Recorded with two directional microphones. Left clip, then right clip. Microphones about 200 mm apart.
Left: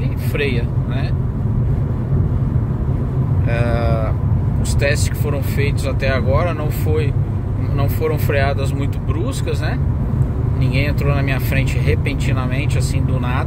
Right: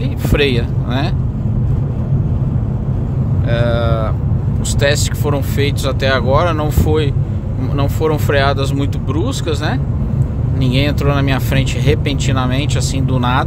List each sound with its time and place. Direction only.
0.3 s speech: 35° right (ahead or behind)
3.4 s cattle: 20° right (ahead or behind)
4.7 s speech: 25° right (ahead or behind)